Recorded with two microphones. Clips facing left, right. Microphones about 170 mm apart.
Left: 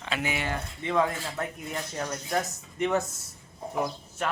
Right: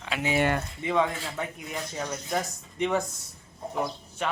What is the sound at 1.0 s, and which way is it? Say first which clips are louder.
Speech: left 1 dB; centre (ahead or behind).